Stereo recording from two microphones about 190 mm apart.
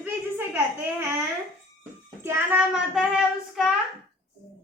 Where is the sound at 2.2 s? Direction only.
10° right (ahead or behind).